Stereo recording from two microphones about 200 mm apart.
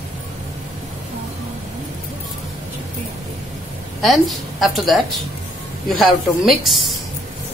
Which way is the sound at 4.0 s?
Centre (ahead or behind).